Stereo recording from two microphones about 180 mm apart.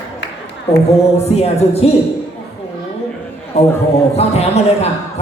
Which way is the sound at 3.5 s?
35° left (ahead or behind).